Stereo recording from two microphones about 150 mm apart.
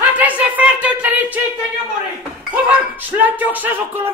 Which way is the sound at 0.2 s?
10° right (ahead or behind).